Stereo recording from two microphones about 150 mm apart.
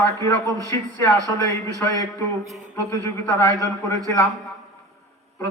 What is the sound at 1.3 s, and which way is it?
A man's voice, 20° left (ahead or behind).